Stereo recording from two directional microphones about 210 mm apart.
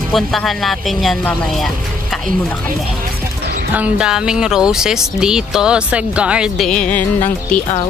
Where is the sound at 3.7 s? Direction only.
5° right (ahead or behind).